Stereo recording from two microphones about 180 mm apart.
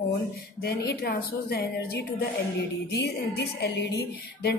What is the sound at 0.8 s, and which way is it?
A woman's voice, 65° left (ahead or behind).